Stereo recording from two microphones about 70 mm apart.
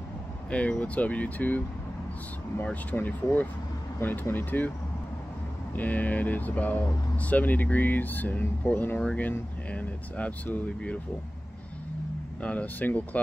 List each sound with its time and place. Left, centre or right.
0.5 s speech: centre
2.6 s speech: left
5.8 s speech: left
12.4 s speech: centre